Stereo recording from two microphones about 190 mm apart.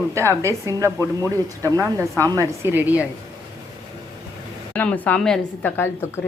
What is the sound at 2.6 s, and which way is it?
Speech, 10° right (ahead or behind).